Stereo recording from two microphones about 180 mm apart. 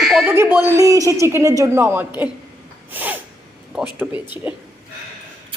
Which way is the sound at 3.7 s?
10° right (ahead or behind).